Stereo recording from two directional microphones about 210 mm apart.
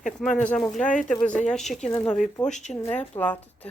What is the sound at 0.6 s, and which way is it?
Speech, 5° left (ahead or behind).